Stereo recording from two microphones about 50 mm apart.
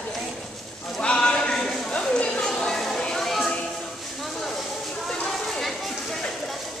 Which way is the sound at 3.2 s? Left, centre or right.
Centre.